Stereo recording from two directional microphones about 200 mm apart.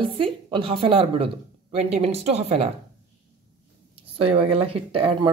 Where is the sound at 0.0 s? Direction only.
25° right (ahead or behind).